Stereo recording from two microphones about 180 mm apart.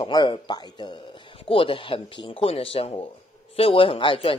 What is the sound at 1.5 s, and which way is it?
Speech, 30° left (ahead or behind).